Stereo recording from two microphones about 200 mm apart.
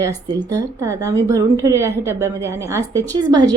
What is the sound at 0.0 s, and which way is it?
A woman's voice, 20° right (ahead or behind).